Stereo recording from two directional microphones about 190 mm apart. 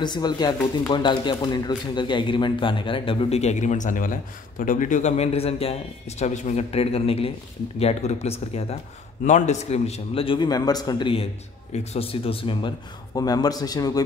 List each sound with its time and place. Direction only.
0.0 s a man's voice: 20° left (ahead or behind)